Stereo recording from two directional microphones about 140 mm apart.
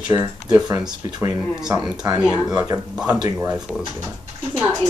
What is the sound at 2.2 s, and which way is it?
Speech, 5° right (ahead or behind).